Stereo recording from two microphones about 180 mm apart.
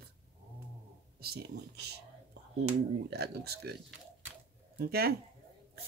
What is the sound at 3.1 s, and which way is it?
Speech, 65° right (ahead or behind).